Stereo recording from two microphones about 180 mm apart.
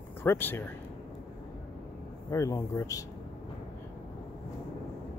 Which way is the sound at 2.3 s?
15° left (ahead or behind).